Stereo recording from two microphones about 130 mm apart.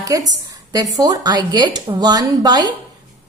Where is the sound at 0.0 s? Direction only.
25° right (ahead or behind).